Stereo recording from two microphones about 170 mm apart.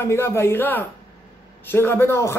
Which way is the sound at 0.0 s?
15° left (ahead or behind).